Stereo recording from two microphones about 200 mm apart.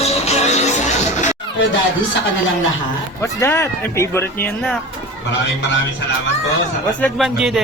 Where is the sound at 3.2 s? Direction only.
15° left (ahead or behind).